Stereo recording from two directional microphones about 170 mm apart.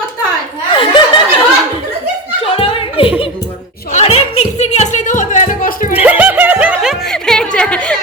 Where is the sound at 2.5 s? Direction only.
35° left (ahead or behind).